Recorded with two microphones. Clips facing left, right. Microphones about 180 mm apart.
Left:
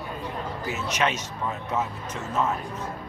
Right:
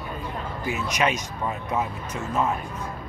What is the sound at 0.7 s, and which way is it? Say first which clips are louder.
Speech: right 2 dB; 10° right (ahead or behind).